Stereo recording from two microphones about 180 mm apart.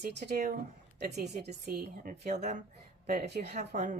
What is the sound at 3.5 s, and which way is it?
Speech, 40° right (ahead or behind).